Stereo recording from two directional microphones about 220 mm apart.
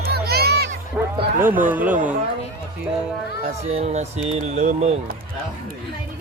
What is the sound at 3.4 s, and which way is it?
Speech, 30° right (ahead or behind).